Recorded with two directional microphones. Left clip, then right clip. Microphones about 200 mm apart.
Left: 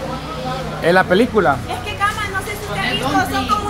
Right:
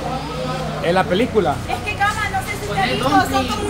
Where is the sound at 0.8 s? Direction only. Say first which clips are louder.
Left 4 dB; 45° left (ahead or behind).